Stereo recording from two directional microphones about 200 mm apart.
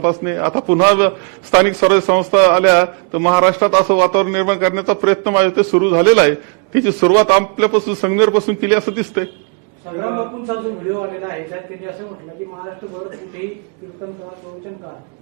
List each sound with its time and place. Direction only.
0.0 s a man's voice: 20° right (ahead or behind)